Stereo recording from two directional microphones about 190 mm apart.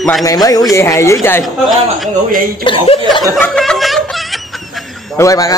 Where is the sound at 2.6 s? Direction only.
30° left (ahead or behind).